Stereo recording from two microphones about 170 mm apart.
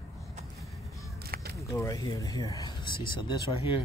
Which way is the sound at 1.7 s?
20° left (ahead or behind).